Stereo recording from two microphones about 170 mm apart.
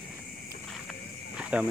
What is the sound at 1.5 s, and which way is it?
Speech, 5° right (ahead or behind).